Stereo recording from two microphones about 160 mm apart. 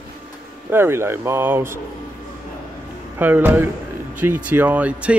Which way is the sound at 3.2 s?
10° right (ahead or behind).